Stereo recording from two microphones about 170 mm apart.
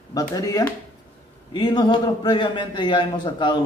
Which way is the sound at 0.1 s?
20° left (ahead or behind).